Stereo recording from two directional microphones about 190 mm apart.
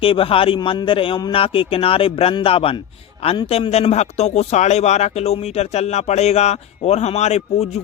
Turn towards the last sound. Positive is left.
turn(degrees=35)  # may be behind; listen again after turning